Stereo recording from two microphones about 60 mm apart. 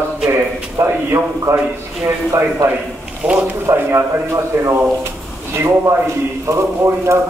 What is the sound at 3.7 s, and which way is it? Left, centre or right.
Speech, right.